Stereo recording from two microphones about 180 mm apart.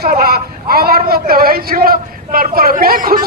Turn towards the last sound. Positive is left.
turn(degrees=-50)  # may be behind; listen again after turning